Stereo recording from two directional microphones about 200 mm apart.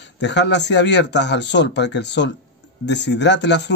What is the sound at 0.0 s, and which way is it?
Speech, 60° left (ahead or behind).